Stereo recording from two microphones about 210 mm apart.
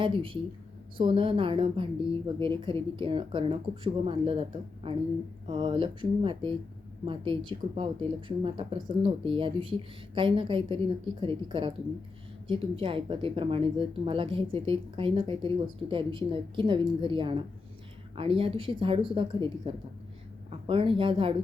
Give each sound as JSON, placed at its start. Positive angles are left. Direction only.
{"t": 0.0, "sound": "speech", "side_deg": -25}